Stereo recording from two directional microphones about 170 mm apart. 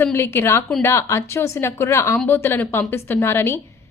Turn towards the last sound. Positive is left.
turn(degrees=15)  # may be behind; listen again after turning